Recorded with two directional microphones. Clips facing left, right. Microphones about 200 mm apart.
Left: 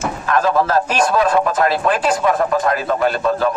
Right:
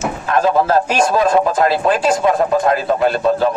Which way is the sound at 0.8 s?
10° right (ahead or behind).